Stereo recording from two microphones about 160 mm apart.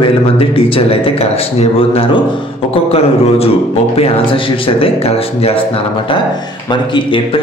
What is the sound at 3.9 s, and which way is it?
A man's voice, 35° left (ahead or behind).